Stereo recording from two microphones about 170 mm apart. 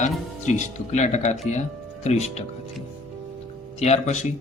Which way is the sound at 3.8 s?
40° left (ahead or behind).